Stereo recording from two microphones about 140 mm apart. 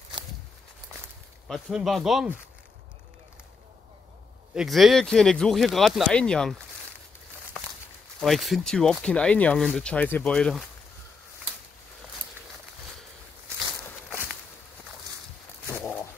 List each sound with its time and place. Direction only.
1.5 s speech: centre (ahead or behind)
4.6 s speech: centre (ahead or behind)
8.2 s speech: centre (ahead or behind)
15.6 s roaring cats: 15° left (ahead or behind)